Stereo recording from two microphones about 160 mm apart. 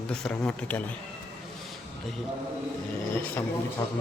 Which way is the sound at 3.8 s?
20° left (ahead or behind).